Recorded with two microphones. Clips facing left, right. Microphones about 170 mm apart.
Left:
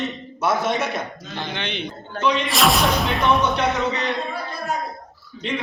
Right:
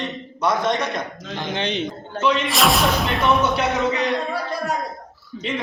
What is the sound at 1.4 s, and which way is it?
Speech, 40° right (ahead or behind).